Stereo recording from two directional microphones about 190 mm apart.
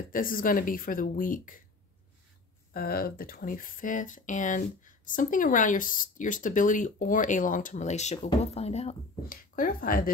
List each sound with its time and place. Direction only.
0.1 s speech: 45° left (ahead or behind)
2.7 s speech: 50° left (ahead or behind); by 8.9 s 35° left (ahead or behind)
9.3 s speech: 45° left (ahead or behind)